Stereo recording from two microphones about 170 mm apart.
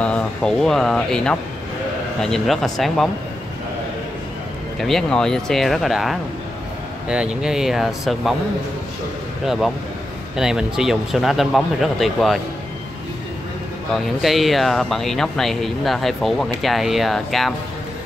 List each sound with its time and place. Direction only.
0.0 s speech: 5° left (ahead or behind)
4.7 s speech: centre (ahead or behind)
10.3 s speech: 5° right (ahead or behind)
13.9 s speech: centre (ahead or behind)